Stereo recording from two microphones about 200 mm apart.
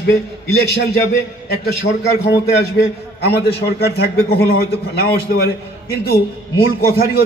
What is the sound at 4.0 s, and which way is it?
A man's voice, 50° left (ahead or behind).